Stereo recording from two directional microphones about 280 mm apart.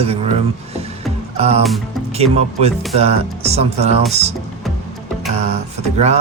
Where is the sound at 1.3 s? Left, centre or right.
Right.